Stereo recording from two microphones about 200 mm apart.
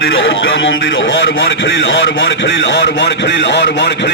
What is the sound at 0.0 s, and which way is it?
A man's voice, 70° left (ahead or behind).